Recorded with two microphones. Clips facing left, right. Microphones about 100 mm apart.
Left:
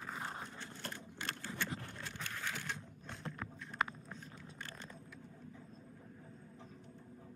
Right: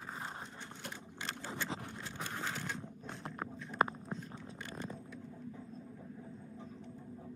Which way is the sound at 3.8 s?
40° right (ahead or behind).